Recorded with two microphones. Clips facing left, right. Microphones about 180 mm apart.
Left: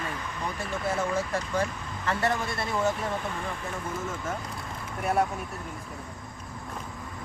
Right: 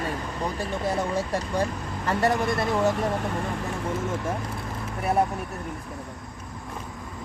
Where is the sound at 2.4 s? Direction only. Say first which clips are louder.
Right 7 dB; 55° right (ahead or behind).